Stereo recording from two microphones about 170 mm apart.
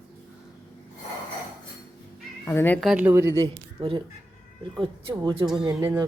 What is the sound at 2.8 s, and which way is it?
Speech, 5° right (ahead or behind).